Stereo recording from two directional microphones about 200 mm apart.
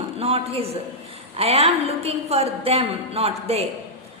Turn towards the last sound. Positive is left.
turn(degrees=-30)  # may be behind; listen again after turning